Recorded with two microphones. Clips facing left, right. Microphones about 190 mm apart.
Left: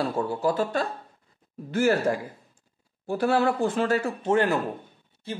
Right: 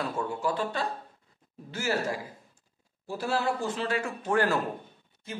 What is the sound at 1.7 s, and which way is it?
Speech, 55° left (ahead or behind).